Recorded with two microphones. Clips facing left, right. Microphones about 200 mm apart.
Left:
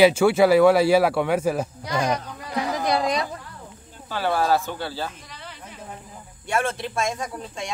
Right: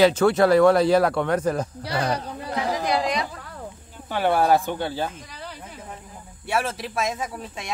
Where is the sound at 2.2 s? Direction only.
30° right (ahead or behind).